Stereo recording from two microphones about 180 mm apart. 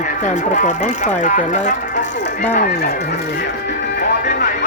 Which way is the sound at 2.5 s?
55° left (ahead or behind).